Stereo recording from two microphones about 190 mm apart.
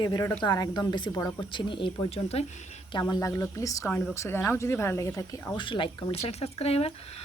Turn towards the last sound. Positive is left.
turn(degrees=30)  # may be behind; listen again after turning